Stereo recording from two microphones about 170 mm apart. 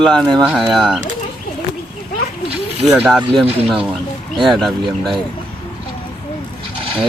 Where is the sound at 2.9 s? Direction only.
Centre (ahead or behind).